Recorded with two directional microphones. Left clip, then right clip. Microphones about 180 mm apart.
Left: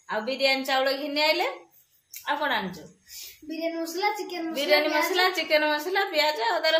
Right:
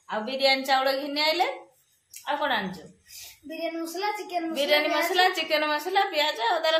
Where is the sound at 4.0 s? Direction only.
15° left (ahead or behind).